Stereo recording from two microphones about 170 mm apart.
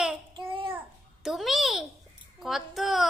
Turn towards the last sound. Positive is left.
turn(degrees=0)  # may be behind; listen again after turning